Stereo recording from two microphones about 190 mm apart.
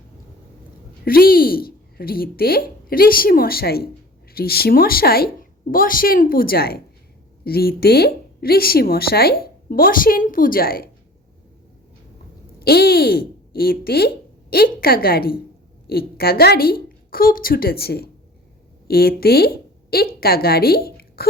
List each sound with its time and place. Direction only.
1.0 s a woman's voice: 50° left (ahead or behind)
12.5 s a woman's voice: 55° left (ahead or behind)